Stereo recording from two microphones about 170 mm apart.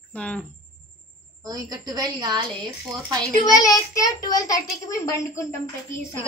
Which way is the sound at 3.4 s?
20° left (ahead or behind).